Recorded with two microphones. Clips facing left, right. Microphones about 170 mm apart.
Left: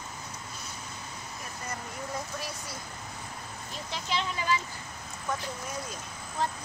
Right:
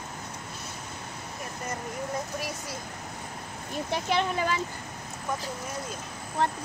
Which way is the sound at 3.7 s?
55° right (ahead or behind).